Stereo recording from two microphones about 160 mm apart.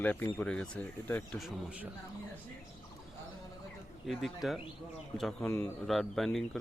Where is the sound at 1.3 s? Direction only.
5° right (ahead or behind).